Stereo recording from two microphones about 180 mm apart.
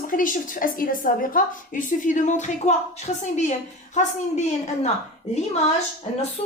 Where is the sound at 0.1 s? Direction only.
50° left (ahead or behind).